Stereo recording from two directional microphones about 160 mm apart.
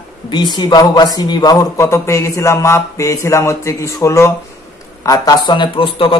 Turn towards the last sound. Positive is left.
turn(degrees=35)  # may be behind; listen again after turning